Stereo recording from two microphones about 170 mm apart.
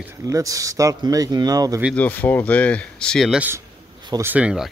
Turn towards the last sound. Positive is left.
turn(degrees=-5)  # may be behind; listen again after turning